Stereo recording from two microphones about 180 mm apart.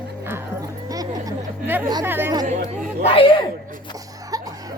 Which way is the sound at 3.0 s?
30° left (ahead or behind).